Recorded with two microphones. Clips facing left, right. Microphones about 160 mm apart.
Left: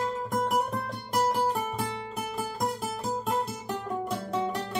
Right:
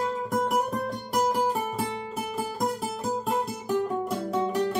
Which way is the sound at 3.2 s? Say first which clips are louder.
Right 2 dB; centre (ahead or behind).